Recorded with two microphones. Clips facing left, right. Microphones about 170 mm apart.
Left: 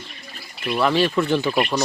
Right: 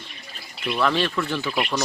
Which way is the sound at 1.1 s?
20° left (ahead or behind).